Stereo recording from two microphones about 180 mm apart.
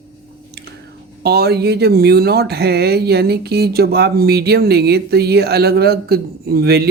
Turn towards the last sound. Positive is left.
turn(degrees=-60)  # may be behind; listen again after turning